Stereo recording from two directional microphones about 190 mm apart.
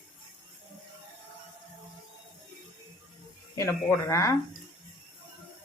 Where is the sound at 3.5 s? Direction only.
15° left (ahead or behind).